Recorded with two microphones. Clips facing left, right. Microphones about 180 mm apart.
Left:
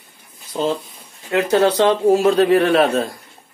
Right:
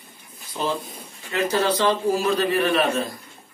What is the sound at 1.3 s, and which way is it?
A man's voice, 65° left (ahead or behind).